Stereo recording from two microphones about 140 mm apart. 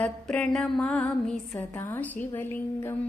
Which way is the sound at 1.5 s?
15° left (ahead or behind).